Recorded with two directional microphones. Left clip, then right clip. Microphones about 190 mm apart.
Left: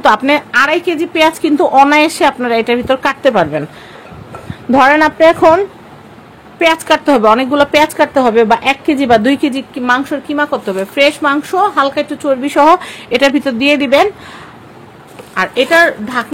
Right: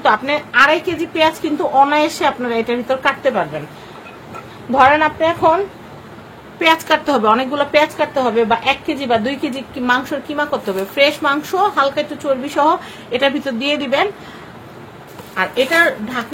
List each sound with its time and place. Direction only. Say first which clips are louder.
0.0 s a woman's voice: left 5 dB; 60° left (ahead or behind)
4.7 s a woman's voice: left 4 dB; 70° left (ahead or behind)
6.6 s a woman's voice: left 3 dB; 45° left (ahead or behind)
15.3 s speech: left 5 dB; 60° left (ahead or behind)